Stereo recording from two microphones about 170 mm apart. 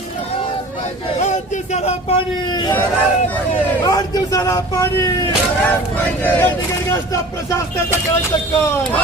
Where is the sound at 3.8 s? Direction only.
25° left (ahead or behind).